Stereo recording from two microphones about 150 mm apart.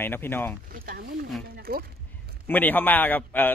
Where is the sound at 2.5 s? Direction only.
10° left (ahead or behind).